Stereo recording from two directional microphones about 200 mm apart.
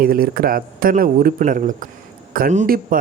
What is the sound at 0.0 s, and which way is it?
A man's voice, 45° right (ahead or behind).